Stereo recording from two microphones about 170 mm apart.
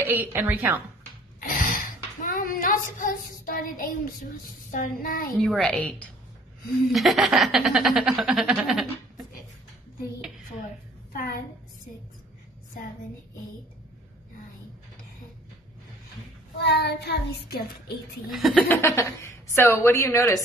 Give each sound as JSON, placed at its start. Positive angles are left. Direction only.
{"t": 0.0, "sound": "a woman's voice", "side_deg": -10}
{"t": 1.4, "sound": "gasp", "side_deg": 55}
{"t": 2.2, "sound": "speech", "side_deg": 55}
{"t": 5.4, "sound": "a woman's voice", "side_deg": 0}
{"t": 11.1, "sound": "a woman's voice", "side_deg": 50}
{"t": 16.5, "sound": "child singing", "side_deg": 75}
{"t": 18.3, "sound": "speech", "side_deg": 0}
{"t": 18.7, "sound": "a woman's voice", "side_deg": 15}